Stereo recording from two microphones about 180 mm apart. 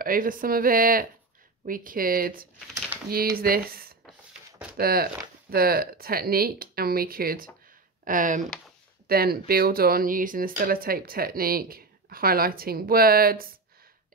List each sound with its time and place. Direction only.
0.0 s speech: 50° right (ahead or behind)
9.0 s speech: 55° right (ahead or behind)